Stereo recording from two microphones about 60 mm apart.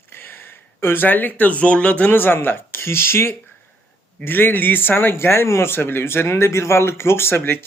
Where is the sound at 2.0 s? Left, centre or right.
Left.